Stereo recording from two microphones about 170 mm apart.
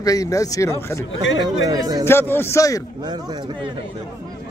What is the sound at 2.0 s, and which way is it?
Speech, 15° left (ahead or behind).